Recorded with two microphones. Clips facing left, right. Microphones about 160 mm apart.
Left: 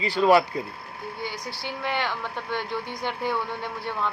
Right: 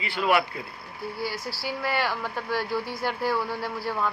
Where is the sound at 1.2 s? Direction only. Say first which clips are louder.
Right 2 dB; 5° right (ahead or behind).